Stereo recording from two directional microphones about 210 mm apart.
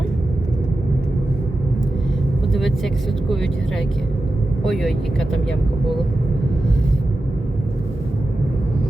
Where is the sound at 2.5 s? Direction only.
Centre (ahead or behind).